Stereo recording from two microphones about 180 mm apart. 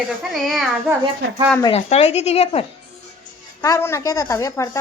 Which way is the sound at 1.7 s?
35° left (ahead or behind).